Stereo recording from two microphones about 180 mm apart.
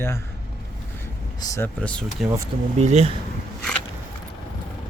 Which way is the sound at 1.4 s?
15° left (ahead or behind).